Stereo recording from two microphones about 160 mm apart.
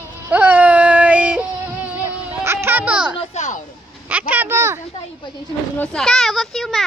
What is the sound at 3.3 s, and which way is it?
Speech, 45° left (ahead or behind).